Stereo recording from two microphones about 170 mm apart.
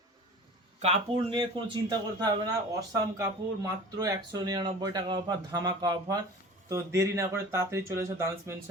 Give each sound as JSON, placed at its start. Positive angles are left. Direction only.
{"t": 0.8, "sound": "speech", "side_deg": -35}